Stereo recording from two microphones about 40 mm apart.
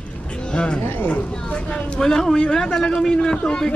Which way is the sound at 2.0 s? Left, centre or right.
Centre.